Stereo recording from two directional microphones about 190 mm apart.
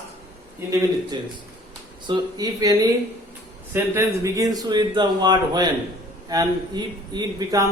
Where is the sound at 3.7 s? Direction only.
15° right (ahead or behind).